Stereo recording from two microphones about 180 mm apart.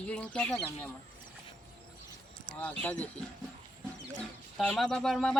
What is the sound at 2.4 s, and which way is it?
Speech, 10° left (ahead or behind).